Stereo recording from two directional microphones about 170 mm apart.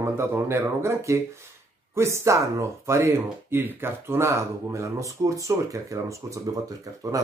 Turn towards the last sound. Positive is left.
turn(degrees=-20)  # may be behind; listen again after turning